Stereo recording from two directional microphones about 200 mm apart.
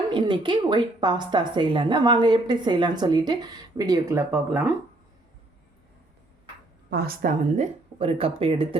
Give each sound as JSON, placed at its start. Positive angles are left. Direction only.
{"t": 0.1, "sound": "speech", "side_deg": -25}
{"t": 6.9, "sound": "speech", "side_deg": -50}